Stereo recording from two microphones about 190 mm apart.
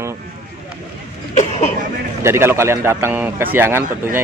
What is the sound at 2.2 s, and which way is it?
A man's voice, 15° right (ahead or behind).